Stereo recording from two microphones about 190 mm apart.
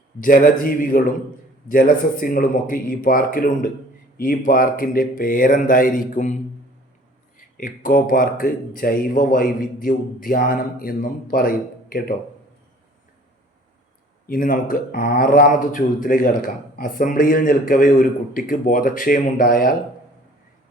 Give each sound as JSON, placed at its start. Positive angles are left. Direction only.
{"t": 0.2, "sound": "a man's voice", "side_deg": 45}
{"t": 14.3, "sound": "a man's voice", "side_deg": 45}